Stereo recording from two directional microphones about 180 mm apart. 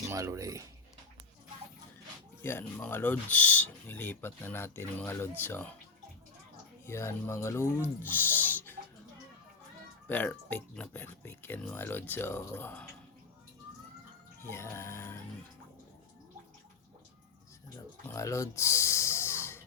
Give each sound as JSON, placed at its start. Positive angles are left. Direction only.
{"t": 0.1, "sound": "speech", "side_deg": -15}
{"t": 2.4, "sound": "speech", "side_deg": 10}
{"t": 6.8, "sound": "speech", "side_deg": 15}
{"t": 10.1, "sound": "speech", "side_deg": 10}
{"t": 14.4, "sound": "speech", "side_deg": 15}
{"t": 18.1, "sound": "snort", "side_deg": 15}